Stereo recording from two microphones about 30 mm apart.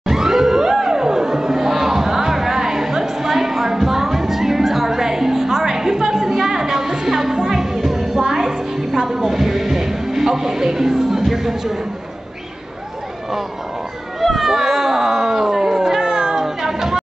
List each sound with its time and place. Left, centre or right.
0.1 s crowd: centre
4.8 s music: centre
14.4 s cat: centre; by 16.4 s right
16.4 s music: centre